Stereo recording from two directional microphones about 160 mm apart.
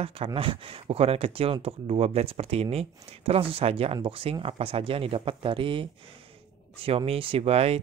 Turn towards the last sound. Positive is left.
turn(degrees=-40)  # may be behind; listen again after turning